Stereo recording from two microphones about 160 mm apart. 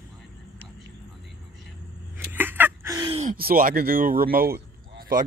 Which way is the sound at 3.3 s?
65° right (ahead or behind).